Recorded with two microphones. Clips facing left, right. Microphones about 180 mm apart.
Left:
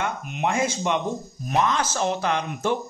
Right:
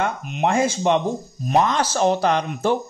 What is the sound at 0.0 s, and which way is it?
Speech, 35° right (ahead or behind).